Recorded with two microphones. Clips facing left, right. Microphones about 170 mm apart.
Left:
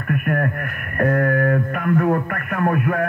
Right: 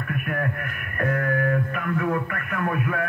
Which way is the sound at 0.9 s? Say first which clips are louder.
Left 6 dB; 45° left (ahead or behind).